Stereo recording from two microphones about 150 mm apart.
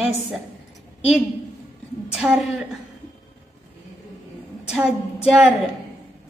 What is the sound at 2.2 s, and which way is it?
Speech, 10° right (ahead or behind).